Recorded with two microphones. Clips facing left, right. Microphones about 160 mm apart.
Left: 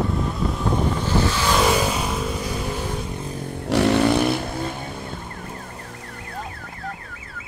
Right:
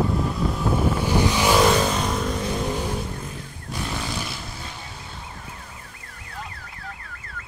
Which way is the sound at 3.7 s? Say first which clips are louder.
Left 14 dB; 75° left (ahead or behind).